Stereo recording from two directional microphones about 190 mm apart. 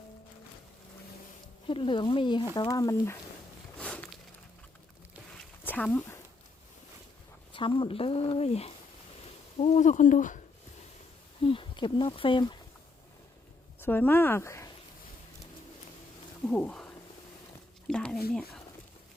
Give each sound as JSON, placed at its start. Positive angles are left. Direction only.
{"t": 1.6, "sound": "speech", "side_deg": 25}
{"t": 3.8, "sound": "a sound", "side_deg": 5}
{"t": 5.3, "sound": "a sound", "side_deg": 5}
{"t": 7.5, "sound": "speech", "side_deg": 25}
{"t": 11.4, "sound": "speech", "side_deg": 25}
{"t": 13.8, "sound": "speech", "side_deg": 10}
{"t": 16.5, "sound": "speech", "side_deg": 5}
{"t": 17.8, "sound": "a sound", "side_deg": 5}
{"t": 18.3, "sound": "speech", "side_deg": 5}